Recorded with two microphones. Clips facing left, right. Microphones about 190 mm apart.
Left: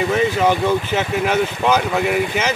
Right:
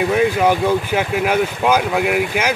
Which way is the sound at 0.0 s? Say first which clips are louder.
Right 1 dB; 10° right (ahead or behind).